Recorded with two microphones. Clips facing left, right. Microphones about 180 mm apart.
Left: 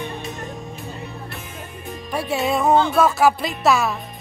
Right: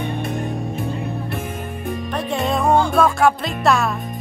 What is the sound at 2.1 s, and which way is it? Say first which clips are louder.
Music: left 1 dB; 5° left (ahead or behind).